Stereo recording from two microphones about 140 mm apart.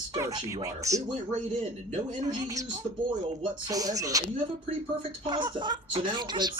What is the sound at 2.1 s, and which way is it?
Speech, 30° right (ahead or behind).